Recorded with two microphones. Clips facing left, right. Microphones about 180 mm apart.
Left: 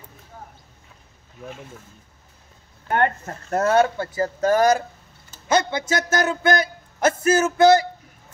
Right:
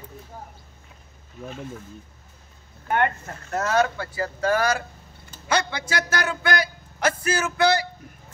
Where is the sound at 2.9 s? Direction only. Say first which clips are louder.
Left 2 dB; 40° left (ahead or behind); by 4.5 s 20° left (ahead or behind).